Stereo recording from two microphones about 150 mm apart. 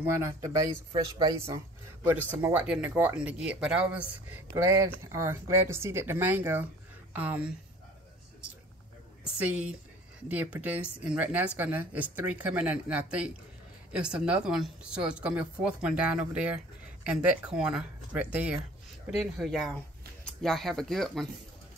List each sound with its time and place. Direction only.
0.0 s speech: 20° right (ahead or behind)
2.0 s speech: 15° right (ahead or behind)
10.2 s speech: 10° right (ahead or behind)